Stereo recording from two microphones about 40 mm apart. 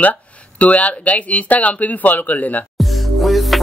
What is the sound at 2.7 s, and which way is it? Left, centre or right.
Music, centre.